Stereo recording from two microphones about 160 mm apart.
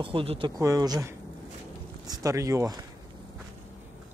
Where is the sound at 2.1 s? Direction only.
20° right (ahead or behind).